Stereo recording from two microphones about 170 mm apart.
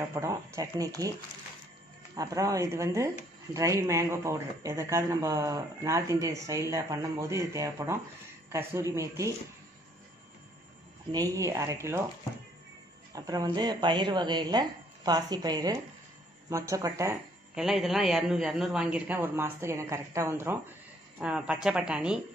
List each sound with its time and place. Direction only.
0.0 s a man's voice: 15° right (ahead or behind)
2.1 s a man's voice: 20° right (ahead or behind)
11.1 s a man's voice: 20° right (ahead or behind)
13.1 s a man's voice: 20° right (ahead or behind)
17.6 s a man's voice: centre (ahead or behind)